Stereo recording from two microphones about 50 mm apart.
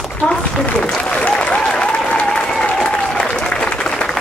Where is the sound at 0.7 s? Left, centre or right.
Centre.